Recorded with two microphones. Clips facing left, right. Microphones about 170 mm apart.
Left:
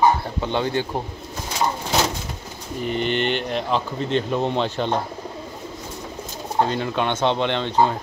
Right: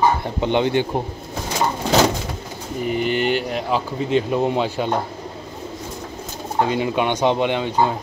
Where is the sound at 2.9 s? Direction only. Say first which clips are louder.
Right 2 dB; 5° right (ahead or behind).